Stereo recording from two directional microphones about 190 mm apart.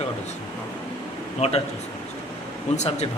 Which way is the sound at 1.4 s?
35° left (ahead or behind).